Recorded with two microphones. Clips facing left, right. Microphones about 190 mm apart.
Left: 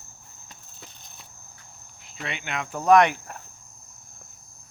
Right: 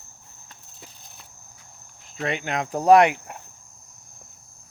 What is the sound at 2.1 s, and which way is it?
Speech, 40° right (ahead or behind).